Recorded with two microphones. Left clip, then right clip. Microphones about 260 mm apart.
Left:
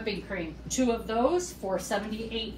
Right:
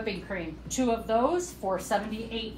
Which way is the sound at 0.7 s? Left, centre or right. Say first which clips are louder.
Right 1 dB; centre.